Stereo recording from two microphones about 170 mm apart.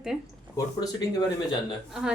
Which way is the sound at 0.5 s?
20° left (ahead or behind).